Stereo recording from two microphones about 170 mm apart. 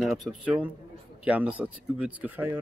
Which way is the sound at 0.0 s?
Centre (ahead or behind).